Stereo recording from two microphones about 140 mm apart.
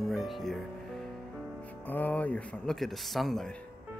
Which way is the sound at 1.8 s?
10° left (ahead or behind).